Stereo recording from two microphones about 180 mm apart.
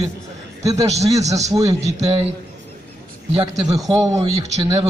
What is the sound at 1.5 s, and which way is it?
Speech, 20° right (ahead or behind).